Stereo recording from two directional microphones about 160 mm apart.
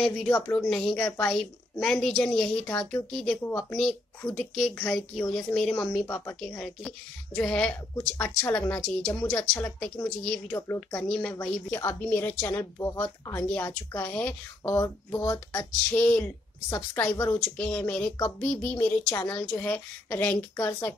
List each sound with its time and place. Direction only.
0.0 s a woman's voice: 5° left (ahead or behind)
1.0 s speech: 15° left (ahead or behind)
1.3 s a woman's voice: centre (ahead or behind); by 15.6 s 20° left (ahead or behind)
15.9 s speech: 10° left (ahead or behind)